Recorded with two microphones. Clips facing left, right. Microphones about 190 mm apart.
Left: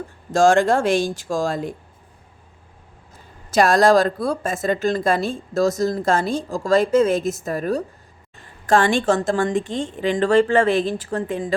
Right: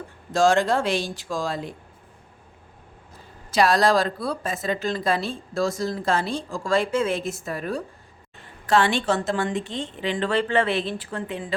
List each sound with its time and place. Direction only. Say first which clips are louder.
0.3 s speech: left 4 dB; 50° left (ahead or behind)
3.5 s speech: left 4 dB; 45° left (ahead or behind)